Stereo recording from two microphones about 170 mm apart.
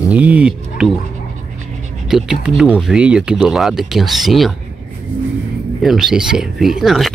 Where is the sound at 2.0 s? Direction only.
5° right (ahead or behind).